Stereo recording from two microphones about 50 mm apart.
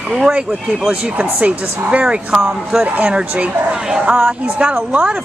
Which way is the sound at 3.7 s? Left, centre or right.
Centre.